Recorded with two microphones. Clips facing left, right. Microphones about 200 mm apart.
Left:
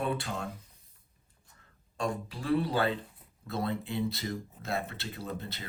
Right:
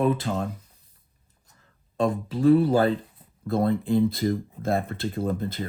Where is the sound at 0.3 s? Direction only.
60° right (ahead or behind).